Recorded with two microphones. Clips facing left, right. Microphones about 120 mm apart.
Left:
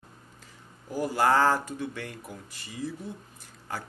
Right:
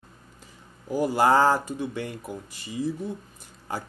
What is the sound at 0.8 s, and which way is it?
Speech, 20° right (ahead or behind).